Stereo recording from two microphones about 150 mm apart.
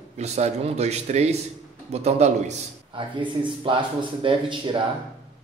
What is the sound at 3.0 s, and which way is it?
Speech, 35° right (ahead or behind).